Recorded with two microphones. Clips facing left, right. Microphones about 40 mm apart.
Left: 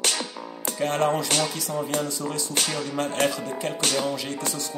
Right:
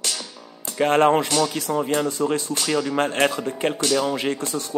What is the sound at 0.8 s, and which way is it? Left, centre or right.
Speech, right.